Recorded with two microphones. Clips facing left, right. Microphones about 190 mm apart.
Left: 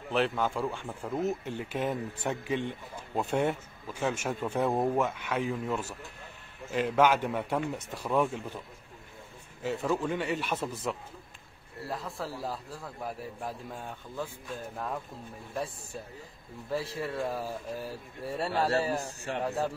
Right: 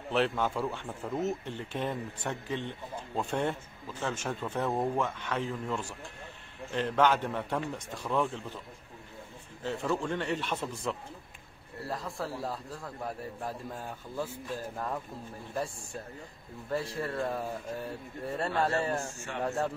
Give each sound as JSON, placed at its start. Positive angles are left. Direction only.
{"t": 0.1, "sound": "speech", "side_deg": 0}
{"t": 9.6, "sound": "a man's voice", "side_deg": 10}
{"t": 18.9, "sound": "speech", "side_deg": 35}
{"t": 19.4, "sound": "a man's voice", "side_deg": 0}